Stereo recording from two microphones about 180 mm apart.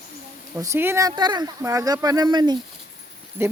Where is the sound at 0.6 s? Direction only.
15° right (ahead or behind).